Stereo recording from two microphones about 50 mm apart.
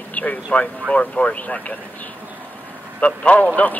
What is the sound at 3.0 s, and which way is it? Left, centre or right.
Speech, left.